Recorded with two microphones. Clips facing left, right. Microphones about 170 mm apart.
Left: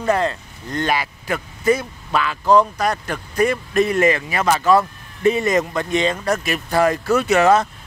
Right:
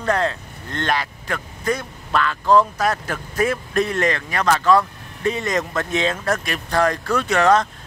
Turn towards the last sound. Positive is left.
turn(degrees=5)  # may be behind; listen again after turning